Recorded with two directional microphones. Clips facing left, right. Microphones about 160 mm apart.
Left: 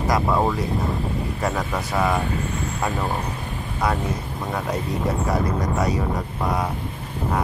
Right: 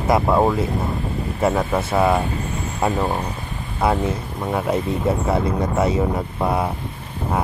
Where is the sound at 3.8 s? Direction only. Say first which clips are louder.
Right 4 dB; 25° right (ahead or behind).